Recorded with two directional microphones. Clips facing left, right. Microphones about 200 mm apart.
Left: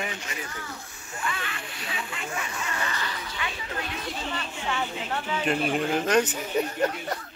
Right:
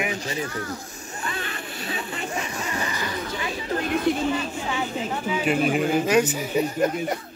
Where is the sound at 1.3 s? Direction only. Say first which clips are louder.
Right 5 dB; 35° right (ahead or behind).